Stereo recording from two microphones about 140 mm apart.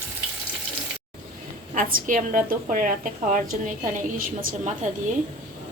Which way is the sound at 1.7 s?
85° right.